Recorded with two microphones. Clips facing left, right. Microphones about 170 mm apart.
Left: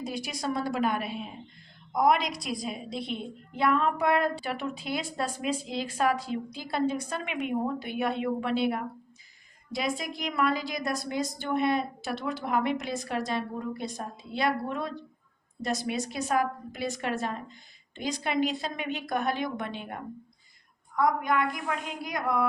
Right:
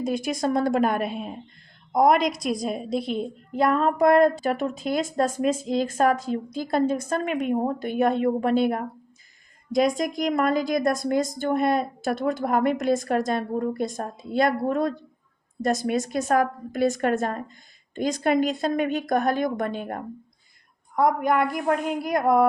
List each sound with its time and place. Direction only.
0.0 s a woman's voice: 50° right (ahead or behind)